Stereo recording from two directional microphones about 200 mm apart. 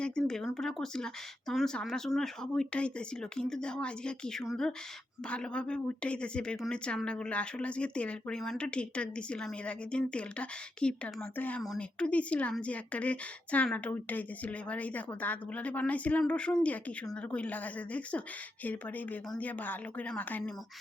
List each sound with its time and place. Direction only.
0.0 s a woman's voice: 5° left (ahead or behind)